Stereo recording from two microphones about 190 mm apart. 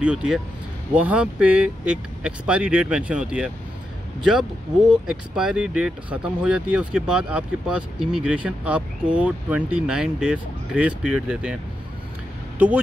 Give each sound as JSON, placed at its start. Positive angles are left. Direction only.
{"t": 0.0, "sound": "speech", "side_deg": -5}